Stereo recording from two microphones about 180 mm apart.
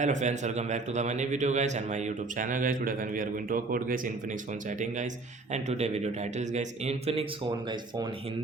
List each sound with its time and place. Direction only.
0.0 s a man's voice: 40° right (ahead or behind)
5.6 s a man's voice: 40° right (ahead or behind)